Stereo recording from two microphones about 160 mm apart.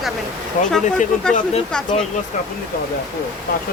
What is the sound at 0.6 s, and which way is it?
Speech, 55° left (ahead or behind).